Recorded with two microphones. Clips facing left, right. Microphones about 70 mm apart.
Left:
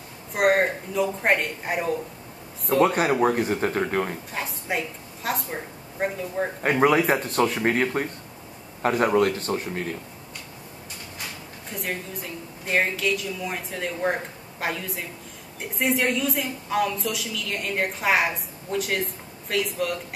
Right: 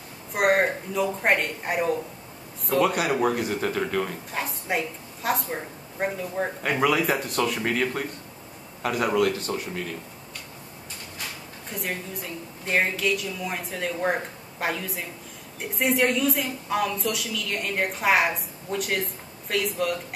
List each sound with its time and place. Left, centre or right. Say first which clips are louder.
0.3 s a woman's voice: left 1 dB; centre
2.8 s speech: left 3 dB; left
4.3 s a woman's voice: right 1 dB; centre
6.8 s speech: left 3 dB; left
11.7 s a woman's voice: left 1 dB; centre